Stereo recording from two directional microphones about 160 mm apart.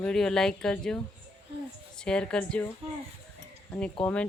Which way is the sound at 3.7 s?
10° left (ahead or behind).